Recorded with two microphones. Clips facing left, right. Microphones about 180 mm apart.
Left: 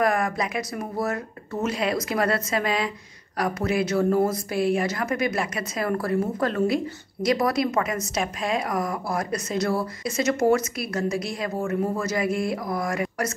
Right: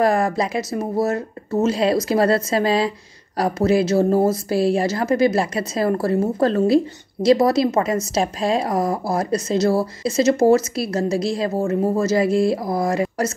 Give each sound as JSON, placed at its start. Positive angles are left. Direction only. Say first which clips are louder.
{"t": 0.0, "sound": "a woman's voice", "louder": "right 5 dB", "side_deg": -30}